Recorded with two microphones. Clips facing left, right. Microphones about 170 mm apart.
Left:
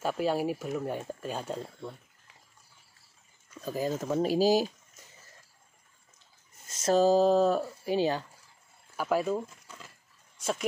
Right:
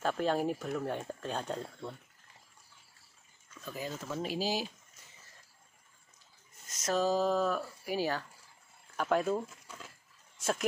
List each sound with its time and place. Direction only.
0.0 s speech: 10° left (ahead or behind)
3.6 s speech: 40° left (ahead or behind)
6.7 s speech: 30° left (ahead or behind)
8.9 s a sound: 5° left (ahead or behind)